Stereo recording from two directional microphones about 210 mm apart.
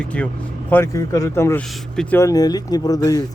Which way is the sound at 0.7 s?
10° left (ahead or behind).